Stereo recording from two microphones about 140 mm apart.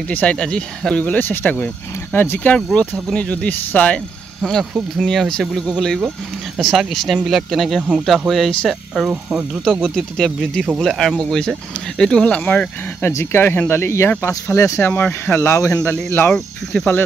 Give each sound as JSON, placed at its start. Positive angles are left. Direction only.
{"t": 0.1, "sound": "speech", "side_deg": 10}
{"t": 6.6, "sound": "speech", "side_deg": 0}